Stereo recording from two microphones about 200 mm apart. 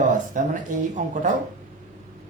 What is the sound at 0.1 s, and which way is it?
Speech, 40° right (ahead or behind).